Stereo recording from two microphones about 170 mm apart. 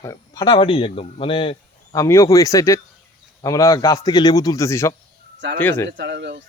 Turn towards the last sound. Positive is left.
turn(degrees=-90)